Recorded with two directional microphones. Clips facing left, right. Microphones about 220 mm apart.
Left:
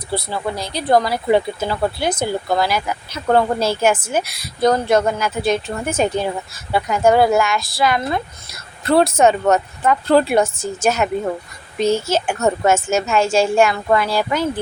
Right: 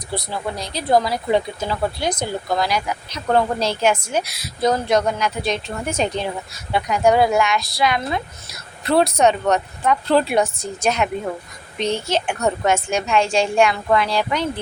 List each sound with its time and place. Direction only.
0.3 s speech: centre (ahead or behind)
3.8 s a woman's voice: 50° left (ahead or behind)
4.1 s speech: centre (ahead or behind)